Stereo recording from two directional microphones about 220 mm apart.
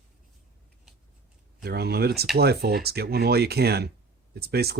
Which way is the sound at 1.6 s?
45° right (ahead or behind).